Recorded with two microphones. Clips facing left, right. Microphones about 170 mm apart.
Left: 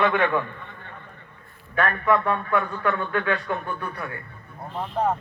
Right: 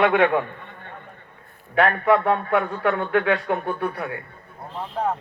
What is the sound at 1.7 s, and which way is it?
A man's voice, 70° right (ahead or behind).